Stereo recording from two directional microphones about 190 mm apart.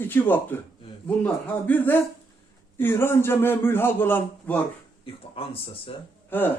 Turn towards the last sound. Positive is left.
turn(degrees=10)  # may be behind; listen again after turning